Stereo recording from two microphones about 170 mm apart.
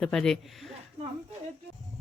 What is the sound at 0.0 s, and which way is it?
Speech, 5° left (ahead or behind).